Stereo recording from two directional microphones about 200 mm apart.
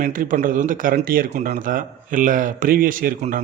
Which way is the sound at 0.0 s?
45° right (ahead or behind).